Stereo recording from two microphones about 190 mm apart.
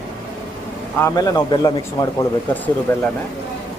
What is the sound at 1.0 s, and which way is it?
Speech, 20° left (ahead or behind).